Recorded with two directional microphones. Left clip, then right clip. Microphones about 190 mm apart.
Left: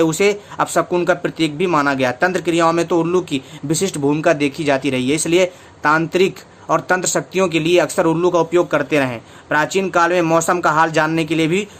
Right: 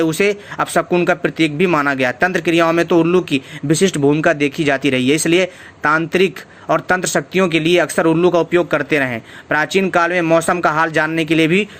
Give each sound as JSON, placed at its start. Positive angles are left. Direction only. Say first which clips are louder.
{"t": 0.0, "sound": "speech", "louder": "even", "side_deg": -15}